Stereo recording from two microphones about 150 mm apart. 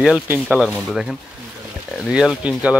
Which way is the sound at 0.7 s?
Centre (ahead or behind).